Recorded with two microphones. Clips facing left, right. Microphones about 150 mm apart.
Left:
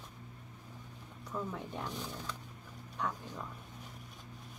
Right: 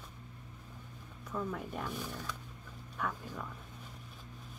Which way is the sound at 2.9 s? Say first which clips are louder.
Even; 15° left (ahead or behind).